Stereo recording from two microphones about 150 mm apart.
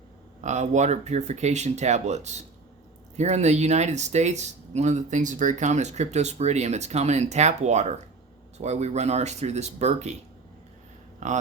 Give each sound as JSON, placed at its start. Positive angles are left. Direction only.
{"t": 0.4, "sound": "speech", "side_deg": -50}